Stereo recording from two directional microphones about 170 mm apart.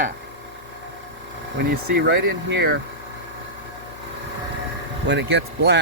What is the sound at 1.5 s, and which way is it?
Speech, 75° right (ahead or behind).